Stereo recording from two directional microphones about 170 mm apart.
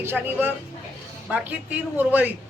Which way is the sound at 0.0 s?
10° right (ahead or behind).